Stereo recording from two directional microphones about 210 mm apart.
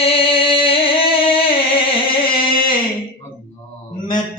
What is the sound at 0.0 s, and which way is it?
Music, 25° left (ahead or behind).